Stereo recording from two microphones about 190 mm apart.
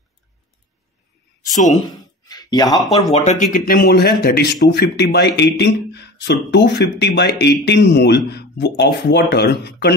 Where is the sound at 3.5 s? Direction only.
50° left (ahead or behind).